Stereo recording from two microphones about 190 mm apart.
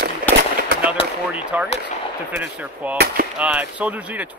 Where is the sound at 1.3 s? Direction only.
5° right (ahead or behind).